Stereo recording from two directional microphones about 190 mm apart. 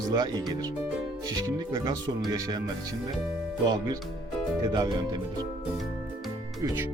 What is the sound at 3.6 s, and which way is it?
Speech, 20° right (ahead or behind).